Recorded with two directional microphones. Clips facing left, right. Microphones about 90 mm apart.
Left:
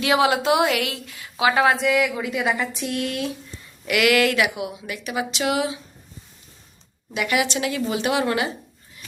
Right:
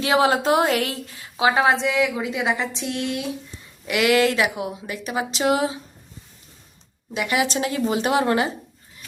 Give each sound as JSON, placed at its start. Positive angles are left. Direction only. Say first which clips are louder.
{"t": 0.0, "sound": "a woman's voice", "louder": "right 1 dB", "side_deg": -30}
{"t": 7.1, "sound": "speech", "louder": "even", "side_deg": -30}